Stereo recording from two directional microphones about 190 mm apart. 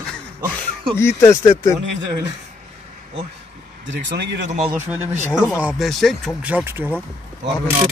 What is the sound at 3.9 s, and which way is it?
Speech, 70° right (ahead or behind).